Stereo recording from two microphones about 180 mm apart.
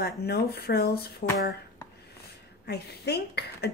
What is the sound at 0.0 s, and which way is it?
Speech, 60° left (ahead or behind).